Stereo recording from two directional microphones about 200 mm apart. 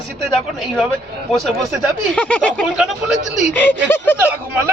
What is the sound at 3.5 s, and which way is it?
Speech, 5° left (ahead or behind).